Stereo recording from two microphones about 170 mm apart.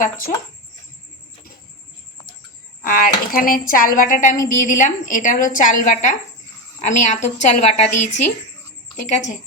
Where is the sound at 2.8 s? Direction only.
55° left (ahead or behind).